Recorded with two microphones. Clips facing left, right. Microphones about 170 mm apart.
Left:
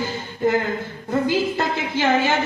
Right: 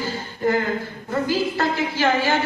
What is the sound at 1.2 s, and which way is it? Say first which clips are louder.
Speech: right 1 dB; 20° left (ahead or behind).